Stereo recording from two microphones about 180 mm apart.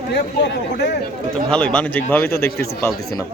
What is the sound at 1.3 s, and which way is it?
A man's voice, 5° left (ahead or behind).